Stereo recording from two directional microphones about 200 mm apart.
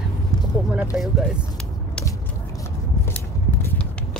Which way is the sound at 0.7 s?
5° right (ahead or behind).